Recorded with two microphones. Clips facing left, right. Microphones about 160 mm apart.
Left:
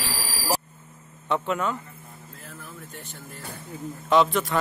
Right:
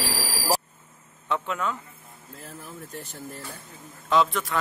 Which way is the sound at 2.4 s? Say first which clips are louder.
Right 3 dB; 40° right (ahead or behind).